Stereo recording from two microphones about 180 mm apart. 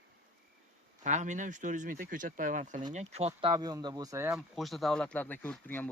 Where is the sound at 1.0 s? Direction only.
40° right (ahead or behind).